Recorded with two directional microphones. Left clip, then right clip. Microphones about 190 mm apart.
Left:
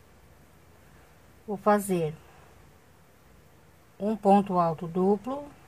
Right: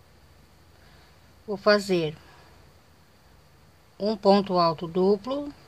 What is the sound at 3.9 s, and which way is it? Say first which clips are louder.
Speech: right 2 dB; 10° right (ahead or behind).